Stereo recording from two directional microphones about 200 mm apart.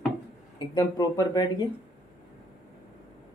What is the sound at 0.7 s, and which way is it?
Speech, 20° left (ahead or behind).